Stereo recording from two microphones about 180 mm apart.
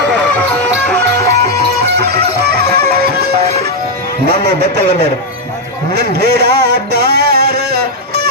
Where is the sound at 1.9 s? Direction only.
65° right (ahead or behind).